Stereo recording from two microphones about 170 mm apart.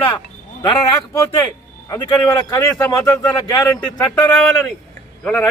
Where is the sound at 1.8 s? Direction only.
25° left (ahead or behind).